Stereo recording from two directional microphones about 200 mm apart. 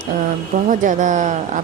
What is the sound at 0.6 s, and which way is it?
Speech, 40° right (ahead or behind).